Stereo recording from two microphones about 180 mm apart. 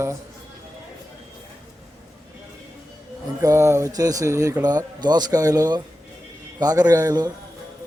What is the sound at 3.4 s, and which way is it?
Speech, 15° right (ahead or behind).